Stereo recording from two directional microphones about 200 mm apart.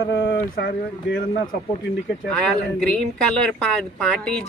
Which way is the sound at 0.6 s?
60° left (ahead or behind).